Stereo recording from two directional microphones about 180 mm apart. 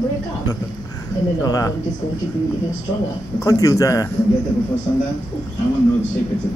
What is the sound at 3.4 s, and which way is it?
Speech, 20° left (ahead or behind).